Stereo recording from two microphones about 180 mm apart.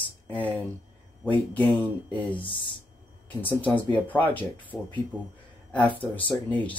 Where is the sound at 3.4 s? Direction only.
10° left (ahead or behind).